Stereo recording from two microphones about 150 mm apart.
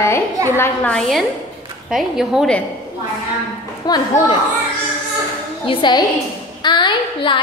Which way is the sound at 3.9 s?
25° left (ahead or behind).